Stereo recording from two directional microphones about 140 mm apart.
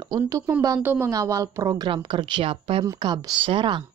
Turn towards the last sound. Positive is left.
turn(degrees=-35)  # may be behind; listen again after turning